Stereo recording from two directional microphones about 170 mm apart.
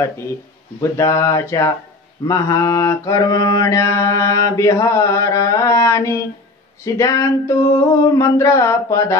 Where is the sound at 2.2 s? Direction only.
20° left (ahead or behind).